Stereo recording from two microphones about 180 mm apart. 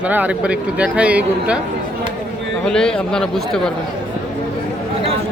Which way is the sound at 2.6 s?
5° left (ahead or behind).